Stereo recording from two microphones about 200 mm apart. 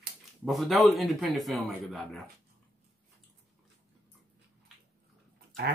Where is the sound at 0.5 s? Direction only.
Centre (ahead or behind).